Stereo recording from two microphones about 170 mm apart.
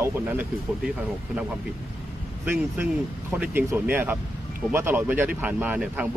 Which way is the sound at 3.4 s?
10° right (ahead or behind).